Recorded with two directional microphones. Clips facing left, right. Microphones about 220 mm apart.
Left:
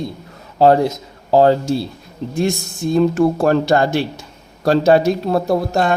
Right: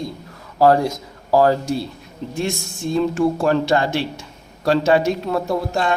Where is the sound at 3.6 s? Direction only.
40° left (ahead or behind).